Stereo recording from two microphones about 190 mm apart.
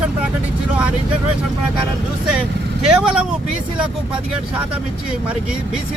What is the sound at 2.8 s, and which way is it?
Speech, 5° right (ahead or behind).